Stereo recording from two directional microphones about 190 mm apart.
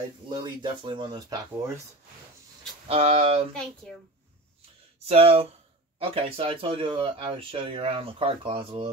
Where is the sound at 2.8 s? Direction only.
30° right (ahead or behind).